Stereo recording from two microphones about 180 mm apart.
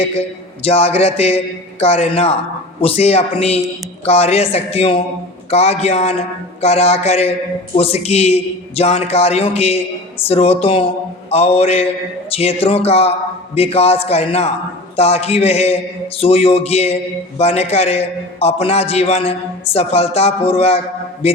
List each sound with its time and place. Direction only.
0.0 s a man's voice: 35° left (ahead or behind)